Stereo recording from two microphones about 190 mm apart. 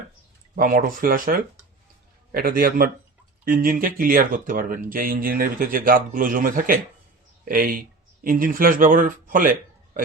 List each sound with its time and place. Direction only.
0.5 s speech: 45° right (ahead or behind)